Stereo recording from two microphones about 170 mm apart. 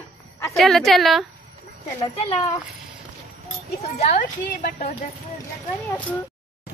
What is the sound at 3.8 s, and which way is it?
A woman's voice, 45° left (ahead or behind).